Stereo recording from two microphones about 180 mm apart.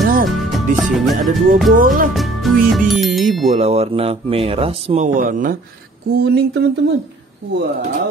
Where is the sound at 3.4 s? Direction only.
35° right (ahead or behind).